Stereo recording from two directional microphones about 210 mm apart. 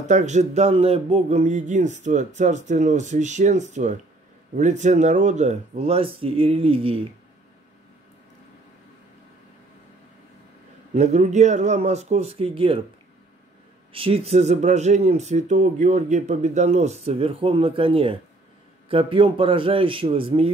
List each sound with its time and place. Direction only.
0.0 s speech: 35° right (ahead or behind)
11.0 s speech: 35° right (ahead or behind)
13.9 s speech: 25° right (ahead or behind)